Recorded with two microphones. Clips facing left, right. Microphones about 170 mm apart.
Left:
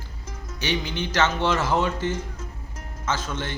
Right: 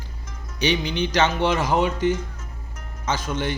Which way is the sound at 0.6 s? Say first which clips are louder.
Right 5 dB; 15° right (ahead or behind).